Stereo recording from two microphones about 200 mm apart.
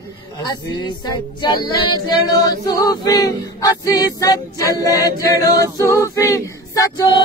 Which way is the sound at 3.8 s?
15° left (ahead or behind).